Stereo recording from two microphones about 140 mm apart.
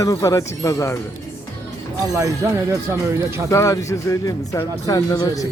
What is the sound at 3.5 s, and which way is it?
Speech, 20° left (ahead or behind).